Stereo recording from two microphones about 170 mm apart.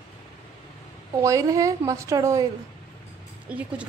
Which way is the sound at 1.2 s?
20° right (ahead or behind).